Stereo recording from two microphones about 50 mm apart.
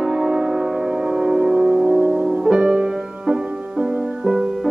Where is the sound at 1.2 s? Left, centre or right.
Centre.